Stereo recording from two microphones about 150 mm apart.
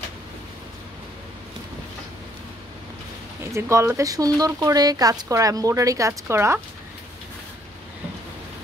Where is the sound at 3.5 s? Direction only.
20° right (ahead or behind).